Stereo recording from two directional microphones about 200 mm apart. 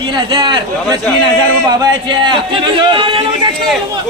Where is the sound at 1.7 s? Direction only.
20° right (ahead or behind).